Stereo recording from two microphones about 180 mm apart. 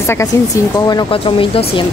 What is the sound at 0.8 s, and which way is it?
Speech, 25° left (ahead or behind).